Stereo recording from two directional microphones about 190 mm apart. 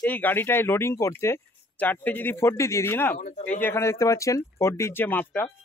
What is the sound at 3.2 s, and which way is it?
Speech, 40° left (ahead or behind).